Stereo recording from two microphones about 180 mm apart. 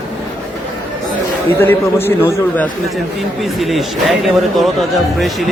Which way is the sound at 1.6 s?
10° left (ahead or behind).